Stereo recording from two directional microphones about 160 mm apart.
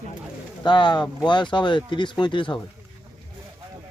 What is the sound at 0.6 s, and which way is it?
Speech, 30° left (ahead or behind).